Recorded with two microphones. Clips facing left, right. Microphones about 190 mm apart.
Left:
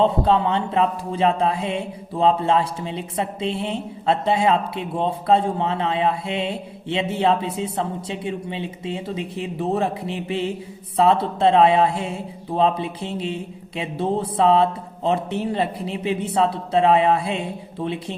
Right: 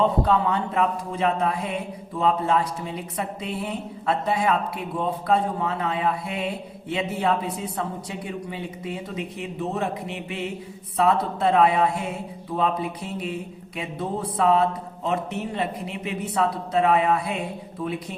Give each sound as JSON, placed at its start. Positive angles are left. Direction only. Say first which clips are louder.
{"t": 0.0, "sound": "a man's voice", "louder": "left 3 dB", "side_deg": 25}